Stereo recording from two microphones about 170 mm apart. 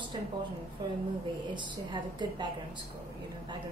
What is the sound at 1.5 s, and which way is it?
Speech, 25° right (ahead or behind).